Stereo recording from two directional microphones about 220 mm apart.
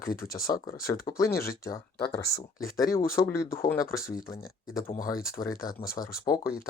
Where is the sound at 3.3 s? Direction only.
40° left (ahead or behind).